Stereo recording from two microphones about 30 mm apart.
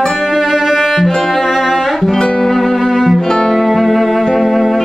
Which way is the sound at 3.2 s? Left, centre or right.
Centre.